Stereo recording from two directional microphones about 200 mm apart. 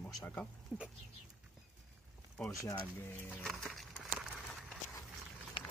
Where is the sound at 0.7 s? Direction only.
5° right (ahead or behind).